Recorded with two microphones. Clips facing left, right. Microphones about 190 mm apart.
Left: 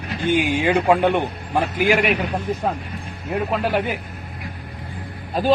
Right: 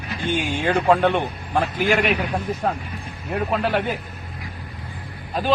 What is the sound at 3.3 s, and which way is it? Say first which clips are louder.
Speech: left 1 dB; centre (ahead or behind).